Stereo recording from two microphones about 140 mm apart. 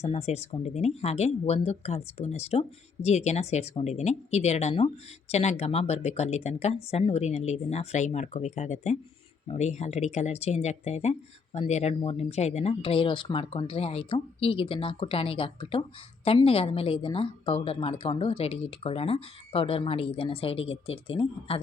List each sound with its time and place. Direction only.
0.0 s a woman's voice: 50° left (ahead or behind)